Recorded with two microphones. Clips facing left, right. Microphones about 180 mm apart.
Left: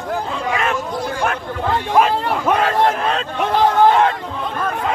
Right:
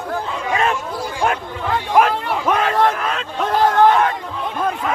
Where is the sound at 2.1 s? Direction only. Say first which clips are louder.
Left 2 dB; 35° left (ahead or behind).